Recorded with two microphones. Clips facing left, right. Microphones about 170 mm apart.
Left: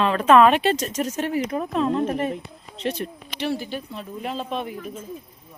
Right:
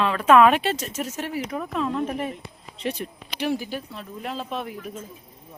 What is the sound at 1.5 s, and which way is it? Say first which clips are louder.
Speech: left 2 dB; 25° left (ahead or behind).